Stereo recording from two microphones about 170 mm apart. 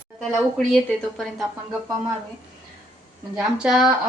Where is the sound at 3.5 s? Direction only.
5° right (ahead or behind).